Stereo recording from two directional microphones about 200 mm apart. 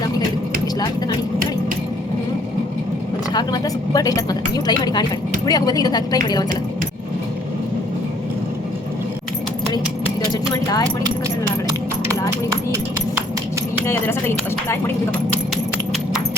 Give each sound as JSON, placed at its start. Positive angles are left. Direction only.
{"t": 3.3, "sound": "a woman's voice", "side_deg": 20}
{"t": 9.7, "sound": "keys jangling", "side_deg": 20}
{"t": 13.8, "sound": "speech", "side_deg": 10}